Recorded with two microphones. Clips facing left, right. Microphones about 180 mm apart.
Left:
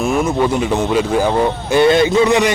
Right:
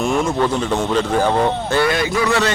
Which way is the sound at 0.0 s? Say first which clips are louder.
Left 2 dB; 5° left (ahead or behind).